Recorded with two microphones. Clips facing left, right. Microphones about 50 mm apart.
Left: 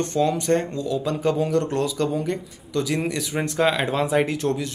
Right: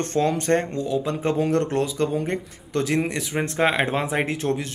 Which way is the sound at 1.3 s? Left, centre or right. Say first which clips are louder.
Even; right.